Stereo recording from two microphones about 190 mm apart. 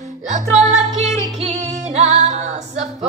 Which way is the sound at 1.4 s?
35° right (ahead or behind).